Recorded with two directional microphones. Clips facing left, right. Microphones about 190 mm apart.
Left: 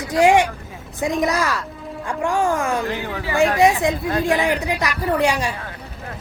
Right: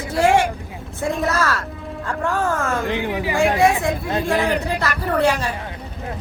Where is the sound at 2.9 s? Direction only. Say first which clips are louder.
Right 3 dB; 20° right (ahead or behind).